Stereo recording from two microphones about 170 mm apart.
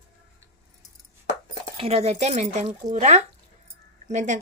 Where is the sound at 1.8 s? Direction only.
35° right (ahead or behind).